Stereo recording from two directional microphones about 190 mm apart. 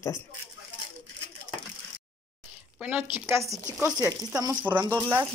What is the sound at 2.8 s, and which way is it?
A woman's voice, 5° right (ahead or behind).